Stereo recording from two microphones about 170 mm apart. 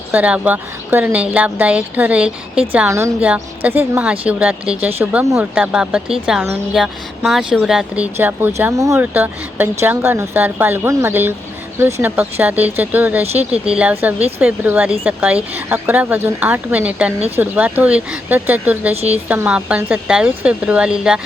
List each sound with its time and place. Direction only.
0.1 s speech: 10° right (ahead or behind)
13.2 s speech: 40° right (ahead or behind)
13.5 s speech: 5° right (ahead or behind)